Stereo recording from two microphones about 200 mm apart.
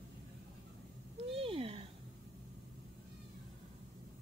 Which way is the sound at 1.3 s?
25° right (ahead or behind).